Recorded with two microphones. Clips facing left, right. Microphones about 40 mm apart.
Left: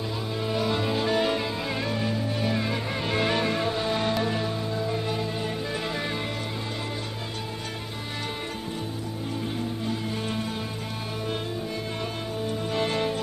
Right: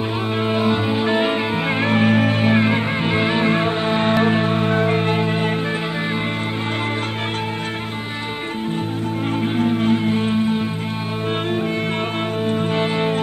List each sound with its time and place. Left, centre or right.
0.4 s music: right
2.4 s music: right
9.6 s music: right
10.0 s music: right
12.4 s music: right
12.8 s music: right